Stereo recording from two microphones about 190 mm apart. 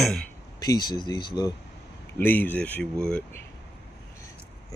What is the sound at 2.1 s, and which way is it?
Speech, 10° left (ahead or behind).